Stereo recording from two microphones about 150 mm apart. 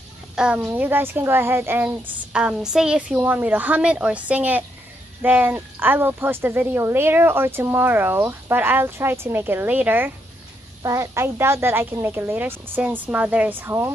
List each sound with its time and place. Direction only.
0.4 s a woman's voice: 10° right (ahead or behind)
2.3 s a woman's voice: 5° right (ahead or behind)